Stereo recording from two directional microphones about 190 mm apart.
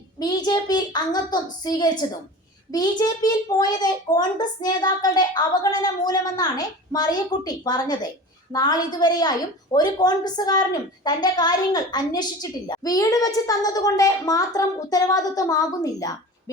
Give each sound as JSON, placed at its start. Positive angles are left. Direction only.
{"t": 0.2, "sound": "a woman's voice", "side_deg": 20}